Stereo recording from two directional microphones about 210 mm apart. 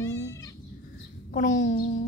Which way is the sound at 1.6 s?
60° left (ahead or behind).